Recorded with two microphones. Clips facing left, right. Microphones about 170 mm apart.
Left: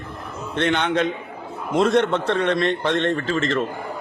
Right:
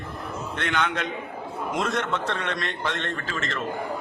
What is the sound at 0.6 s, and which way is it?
A man's voice, 30° left (ahead or behind).